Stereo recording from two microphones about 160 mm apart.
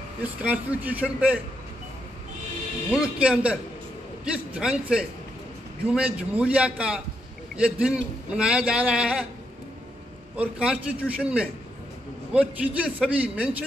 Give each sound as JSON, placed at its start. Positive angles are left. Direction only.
{"t": 0.2, "sound": "a man's voice", "side_deg": -10}
{"t": 2.9, "sound": "a man's voice", "side_deg": -5}
{"t": 10.3, "sound": "a man's voice", "side_deg": -5}